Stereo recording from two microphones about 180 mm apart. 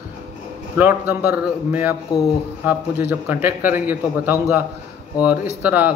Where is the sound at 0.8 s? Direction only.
10° right (ahead or behind).